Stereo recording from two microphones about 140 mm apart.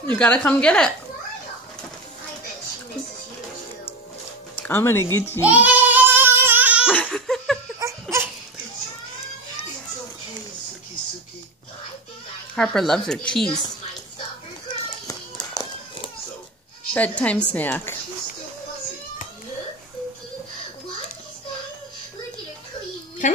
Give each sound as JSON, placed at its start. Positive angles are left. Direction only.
{"t": 0.0, "sound": "a woman's voice", "side_deg": 10}
{"t": 4.6, "sound": "speech", "side_deg": 15}
{"t": 5.4, "sound": "child singing", "side_deg": -10}
{"t": 6.9, "sound": "laughter", "side_deg": 10}
{"t": 7.8, "sound": "a sound", "side_deg": -20}
{"t": 12.5, "sound": "speech", "side_deg": 5}
{"t": 14.9, "sound": "children playing", "side_deg": 30}
{"t": 16.9, "sound": "a woman's voice", "side_deg": 10}
{"t": 23.2, "sound": "speech", "side_deg": 65}